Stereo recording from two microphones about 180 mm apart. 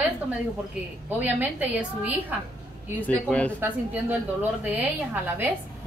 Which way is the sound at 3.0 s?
10° left (ahead or behind).